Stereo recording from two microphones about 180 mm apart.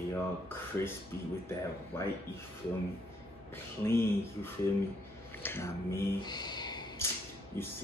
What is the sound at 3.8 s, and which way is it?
Speech, 15° left (ahead or behind).